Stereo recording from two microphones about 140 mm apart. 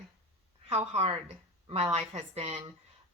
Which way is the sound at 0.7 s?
50° right (ahead or behind).